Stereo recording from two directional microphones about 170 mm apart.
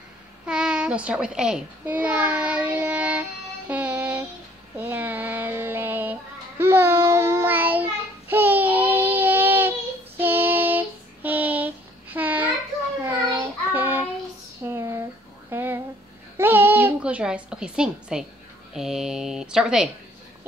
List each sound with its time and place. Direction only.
0.5 s a child's voice: 5° right (ahead or behind)
4.7 s child singing: 10° right (ahead or behind)
14.6 s a sound: 15° right (ahead or behind)
18.7 s speech: 5° right (ahead or behind)